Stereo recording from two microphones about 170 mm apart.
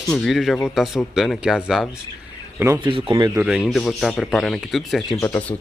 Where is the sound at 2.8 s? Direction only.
25° right (ahead or behind).